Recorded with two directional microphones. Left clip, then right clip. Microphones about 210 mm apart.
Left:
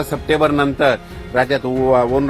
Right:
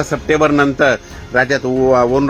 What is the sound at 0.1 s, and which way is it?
A man's voice, 30° right (ahead or behind).